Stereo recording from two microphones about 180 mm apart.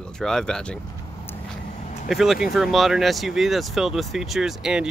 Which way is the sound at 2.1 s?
Centre (ahead or behind).